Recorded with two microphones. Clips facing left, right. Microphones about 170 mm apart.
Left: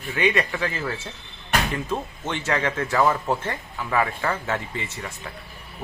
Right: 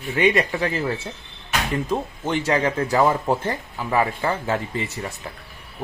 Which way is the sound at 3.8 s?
25° right (ahead or behind).